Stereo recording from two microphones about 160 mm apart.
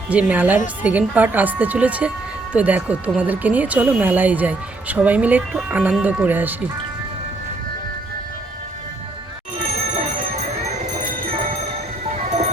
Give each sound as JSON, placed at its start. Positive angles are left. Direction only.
{"t": 0.1, "sound": "speech", "side_deg": -10}
{"t": 12.1, "sound": "music", "side_deg": -45}